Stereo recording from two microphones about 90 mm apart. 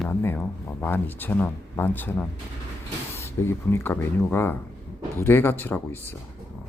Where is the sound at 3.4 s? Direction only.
25° left (ahead or behind).